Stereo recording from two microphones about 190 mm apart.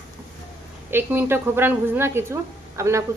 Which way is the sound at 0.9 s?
10° right (ahead or behind).